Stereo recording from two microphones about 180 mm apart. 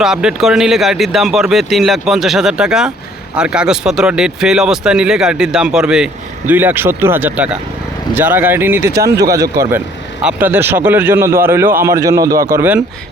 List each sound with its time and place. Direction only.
0.0 s speech: 5° right (ahead or behind)